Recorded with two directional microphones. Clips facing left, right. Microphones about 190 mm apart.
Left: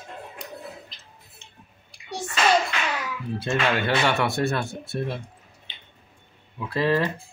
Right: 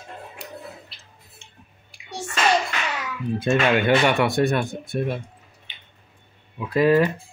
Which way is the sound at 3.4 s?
15° right (ahead or behind).